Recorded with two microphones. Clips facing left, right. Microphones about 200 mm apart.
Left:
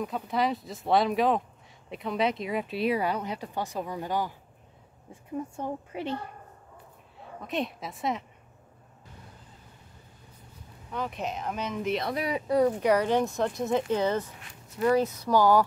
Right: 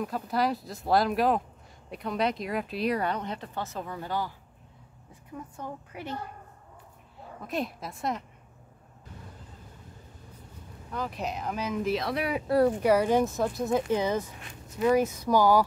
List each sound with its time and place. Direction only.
0.0 s speech: centre (ahead or behind); by 4.3 s 15° left (ahead or behind)
5.1 s a woman's voice: 25° left (ahead or behind)
7.4 s speech: centre (ahead or behind)
10.9 s speech: centre (ahead or behind)
13.8 s speech: 10° right (ahead or behind)